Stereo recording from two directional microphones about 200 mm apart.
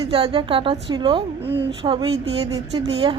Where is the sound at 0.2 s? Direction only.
25° right (ahead or behind).